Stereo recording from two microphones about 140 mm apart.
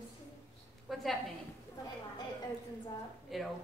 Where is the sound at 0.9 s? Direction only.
Centre (ahead or behind).